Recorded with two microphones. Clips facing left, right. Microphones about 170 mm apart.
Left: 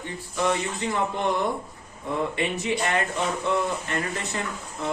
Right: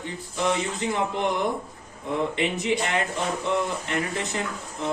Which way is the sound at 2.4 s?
20° right (ahead or behind).